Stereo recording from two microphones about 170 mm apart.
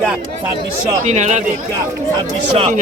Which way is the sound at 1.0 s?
45° right (ahead or behind).